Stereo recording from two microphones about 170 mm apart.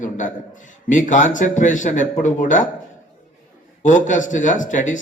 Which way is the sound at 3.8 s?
45° left (ahead or behind).